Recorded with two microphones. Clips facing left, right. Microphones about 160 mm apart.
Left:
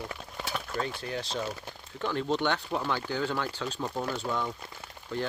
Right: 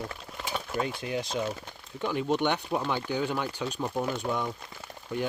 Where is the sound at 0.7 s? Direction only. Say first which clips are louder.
Right 4 dB; 15° right (ahead or behind).